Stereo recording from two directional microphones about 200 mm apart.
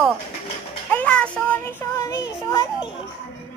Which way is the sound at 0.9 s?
5° left (ahead or behind).